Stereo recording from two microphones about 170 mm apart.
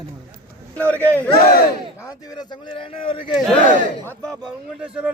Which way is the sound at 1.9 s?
20° left (ahead or behind).